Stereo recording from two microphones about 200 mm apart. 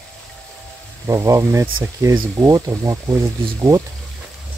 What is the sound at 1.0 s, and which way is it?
Speech, 15° right (ahead or behind).